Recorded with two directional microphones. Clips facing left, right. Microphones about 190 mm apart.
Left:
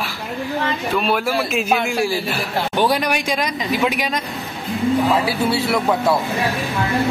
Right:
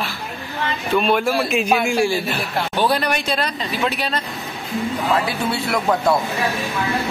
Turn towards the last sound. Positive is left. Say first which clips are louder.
# left 1 dB
turn(degrees=5)  # may be behind; listen again after turning